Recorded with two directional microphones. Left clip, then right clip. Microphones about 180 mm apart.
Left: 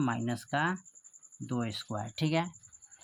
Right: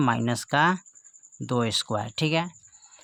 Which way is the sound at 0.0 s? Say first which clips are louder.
Right 9 dB; 55° right (ahead or behind).